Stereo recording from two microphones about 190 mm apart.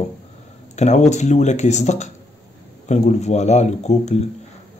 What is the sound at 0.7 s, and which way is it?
Speech, 35° left (ahead or behind).